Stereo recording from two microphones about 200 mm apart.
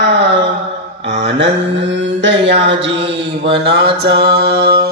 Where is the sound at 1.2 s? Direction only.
65° right (ahead or behind).